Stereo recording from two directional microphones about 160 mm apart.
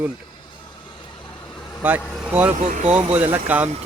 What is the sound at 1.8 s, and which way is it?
Speech, 10° right (ahead or behind).